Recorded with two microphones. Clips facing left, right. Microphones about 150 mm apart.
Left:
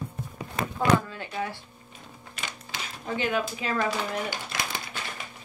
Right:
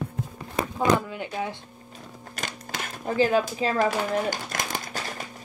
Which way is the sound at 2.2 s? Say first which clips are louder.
Right 4 dB; 45° right (ahead or behind).